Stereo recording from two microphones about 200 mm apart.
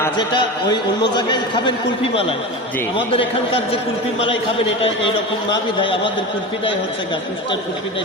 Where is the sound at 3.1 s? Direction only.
30° left (ahead or behind).